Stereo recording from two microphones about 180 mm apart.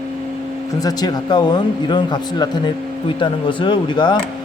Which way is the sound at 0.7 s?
20° left (ahead or behind).